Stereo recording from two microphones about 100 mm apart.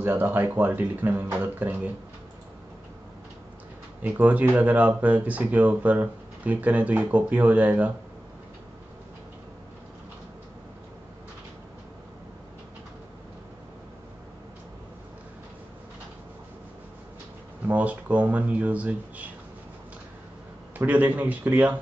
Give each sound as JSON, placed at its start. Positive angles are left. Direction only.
{"t": 0.0, "sound": "speech", "side_deg": -20}
{"t": 4.0, "sound": "speech", "side_deg": -15}
{"t": 17.6, "sound": "speech", "side_deg": -15}
{"t": 20.7, "sound": "speech", "side_deg": -20}